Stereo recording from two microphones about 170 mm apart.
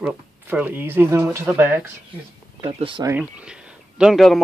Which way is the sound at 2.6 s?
35° right (ahead or behind).